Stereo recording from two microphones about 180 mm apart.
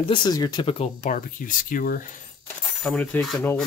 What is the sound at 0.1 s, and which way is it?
Speech, 25° left (ahead or behind).